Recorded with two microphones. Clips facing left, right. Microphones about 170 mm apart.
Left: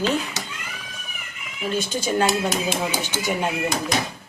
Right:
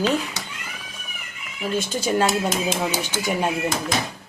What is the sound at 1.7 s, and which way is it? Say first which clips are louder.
Speech: right 1 dB; centre (ahead or behind).